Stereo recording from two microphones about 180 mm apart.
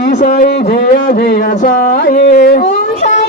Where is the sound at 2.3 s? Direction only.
45° left (ahead or behind).